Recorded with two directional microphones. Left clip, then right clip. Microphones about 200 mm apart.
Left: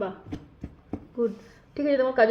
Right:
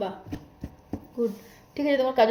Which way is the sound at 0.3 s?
30° right (ahead or behind).